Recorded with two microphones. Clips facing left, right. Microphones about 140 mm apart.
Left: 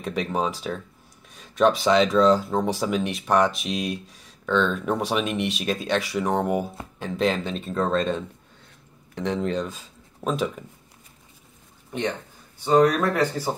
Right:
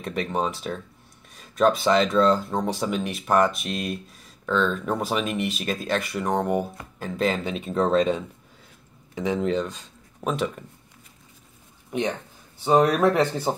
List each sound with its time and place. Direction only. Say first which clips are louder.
0.0 s speech: left 1 dB; centre (ahead or behind)
11.9 s speech: right 1 dB; 20° right (ahead or behind)